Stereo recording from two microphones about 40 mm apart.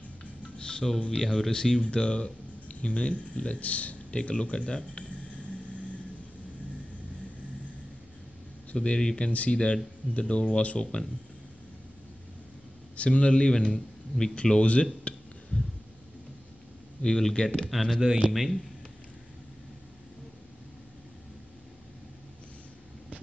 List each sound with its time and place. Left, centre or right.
0.6 s music: left
0.9 s speech: centre
1.2 s speech: centre
1.5 s speech: centre
8.7 s speech: left
9.3 s speech: left
12.9 s a man's voice: left
13.5 s speech: centre
14.3 s speech: left
17.0 s speech: centre
17.6 s speech: centre